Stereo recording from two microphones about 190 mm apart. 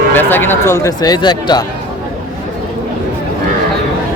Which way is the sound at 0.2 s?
10° left (ahead or behind).